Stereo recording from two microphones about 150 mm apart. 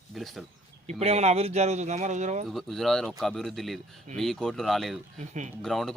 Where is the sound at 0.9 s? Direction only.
45° right (ahead or behind).